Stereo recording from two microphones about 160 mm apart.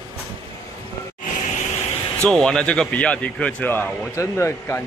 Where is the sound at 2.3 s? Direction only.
5° left (ahead or behind).